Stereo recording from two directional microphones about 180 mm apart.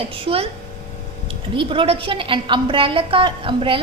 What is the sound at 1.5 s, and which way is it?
A woman's voice, 30° right (ahead or behind).